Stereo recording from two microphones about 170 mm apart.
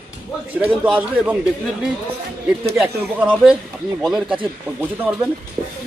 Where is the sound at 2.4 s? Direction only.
5° right (ahead or behind).